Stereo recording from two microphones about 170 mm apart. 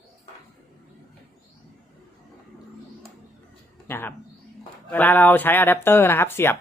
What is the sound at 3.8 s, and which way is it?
Speech, 10° left (ahead or behind).